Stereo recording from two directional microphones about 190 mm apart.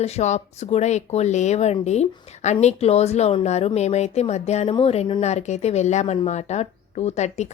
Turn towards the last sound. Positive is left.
turn(degrees=35)  # may be behind; listen again after turning